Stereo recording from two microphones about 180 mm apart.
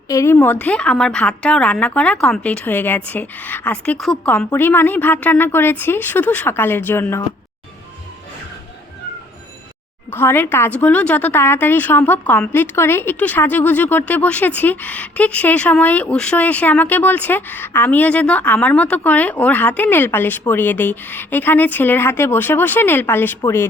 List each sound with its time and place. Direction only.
0.1 s speech: 15° left (ahead or behind)
10.1 s speech: 10° left (ahead or behind)